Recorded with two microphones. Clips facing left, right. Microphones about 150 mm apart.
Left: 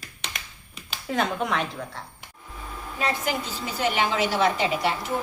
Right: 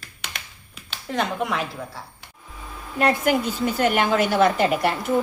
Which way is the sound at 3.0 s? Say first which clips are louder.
Right 7 dB; 60° right (ahead or behind).